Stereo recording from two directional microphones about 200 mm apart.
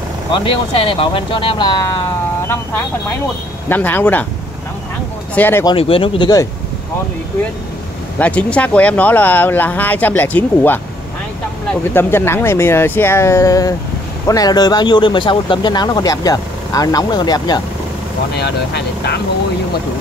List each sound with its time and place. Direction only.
0.3 s speech: 25° left (ahead or behind)
3.6 s speech: 10° left (ahead or behind)
5.3 s speech: 10° left (ahead or behind)
5.7 s speech: 25° left (ahead or behind)
8.2 s speech: 5° left (ahead or behind)
11.9 s speech: 10° left (ahead or behind)